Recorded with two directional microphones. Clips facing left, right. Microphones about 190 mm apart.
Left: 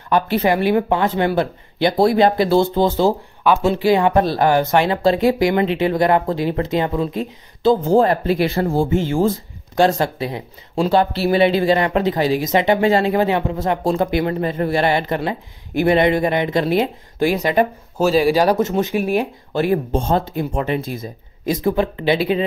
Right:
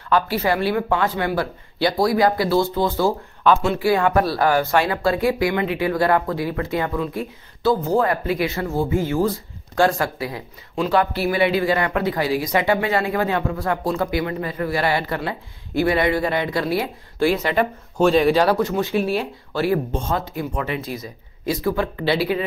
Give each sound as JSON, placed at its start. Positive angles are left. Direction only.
{"t": 0.1, "sound": "speech", "side_deg": 20}
{"t": 17.9, "sound": "speech", "side_deg": 5}
{"t": 19.9, "sound": "speech", "side_deg": 30}
{"t": 20.8, "sound": "speech", "side_deg": 50}
{"t": 21.5, "sound": "speech", "side_deg": 20}